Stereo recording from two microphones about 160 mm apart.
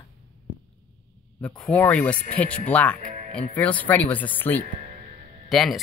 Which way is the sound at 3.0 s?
50° right (ahead or behind).